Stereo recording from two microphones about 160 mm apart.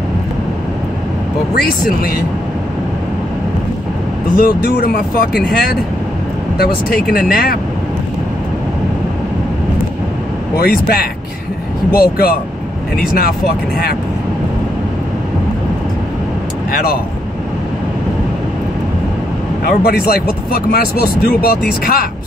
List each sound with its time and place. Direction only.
1.5 s speech: 70° left (ahead or behind)
4.4 s speech: 70° left (ahead or behind)
10.5 s speech: 70° left (ahead or behind)
19.8 s speech: 70° left (ahead or behind)